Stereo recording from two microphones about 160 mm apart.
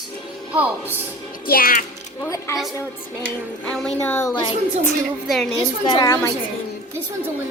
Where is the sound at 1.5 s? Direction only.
65° left (ahead or behind).